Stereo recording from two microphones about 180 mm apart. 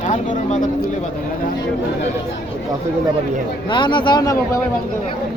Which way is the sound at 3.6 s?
25° left (ahead or behind).